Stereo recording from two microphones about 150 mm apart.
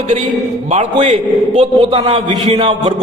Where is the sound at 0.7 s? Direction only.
40° right (ahead or behind).